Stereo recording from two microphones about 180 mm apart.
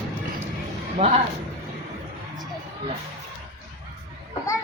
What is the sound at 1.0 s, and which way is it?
Speech, 35° right (ahead or behind).